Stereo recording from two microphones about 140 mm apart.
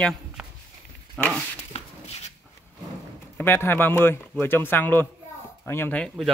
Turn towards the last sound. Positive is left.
turn(degrees=10)  # may be behind; listen again after turning